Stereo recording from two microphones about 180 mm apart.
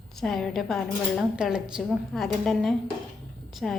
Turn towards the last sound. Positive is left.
turn(degrees=0)  # may be behind; listen again after turning